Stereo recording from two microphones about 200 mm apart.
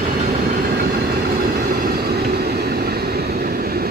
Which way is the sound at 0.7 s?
50° right (ahead or behind).